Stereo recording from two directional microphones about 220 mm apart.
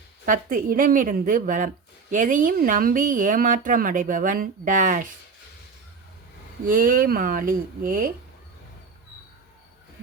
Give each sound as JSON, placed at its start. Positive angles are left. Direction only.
{"t": 0.3, "sound": "speech", "side_deg": -40}
{"t": 6.7, "sound": "speech", "side_deg": -40}